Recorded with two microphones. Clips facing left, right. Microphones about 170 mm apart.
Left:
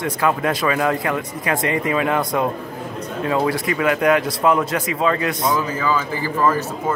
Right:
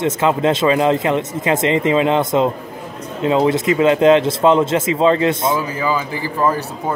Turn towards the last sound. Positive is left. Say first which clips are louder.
# right 1 dB
turn(degrees=-15)  # may be behind; listen again after turning